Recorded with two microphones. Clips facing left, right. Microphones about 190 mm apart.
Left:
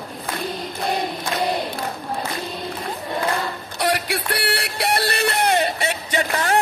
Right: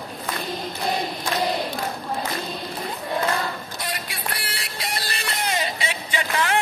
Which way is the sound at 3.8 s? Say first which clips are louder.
Left 14 dB; 70° left (ahead or behind).